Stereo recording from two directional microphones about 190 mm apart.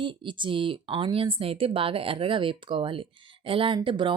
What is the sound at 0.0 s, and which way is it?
Speech, 25° right (ahead or behind).